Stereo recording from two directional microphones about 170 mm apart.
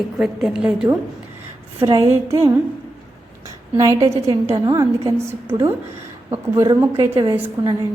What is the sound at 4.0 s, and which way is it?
Speech, 35° right (ahead or behind).